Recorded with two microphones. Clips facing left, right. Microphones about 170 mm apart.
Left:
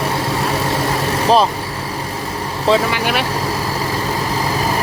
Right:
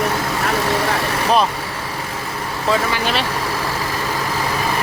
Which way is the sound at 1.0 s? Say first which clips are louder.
Left 6 dB; 35° left (ahead or behind).